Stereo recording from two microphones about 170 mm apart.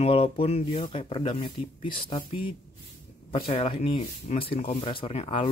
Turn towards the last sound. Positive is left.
turn(degrees=35)  # may be behind; listen again after turning